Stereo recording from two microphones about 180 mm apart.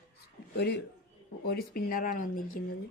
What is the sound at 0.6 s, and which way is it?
Speech, 65° left (ahead or behind).